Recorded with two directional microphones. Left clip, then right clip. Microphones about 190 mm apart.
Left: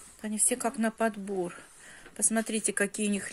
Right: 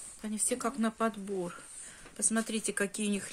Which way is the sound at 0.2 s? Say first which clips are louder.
Left 3 dB; 15° left (ahead or behind).